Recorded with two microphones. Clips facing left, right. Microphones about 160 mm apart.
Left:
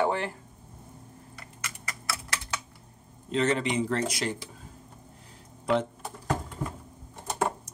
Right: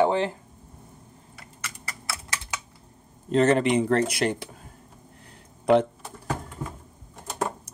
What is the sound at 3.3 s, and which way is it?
Speech, 50° right (ahead or behind).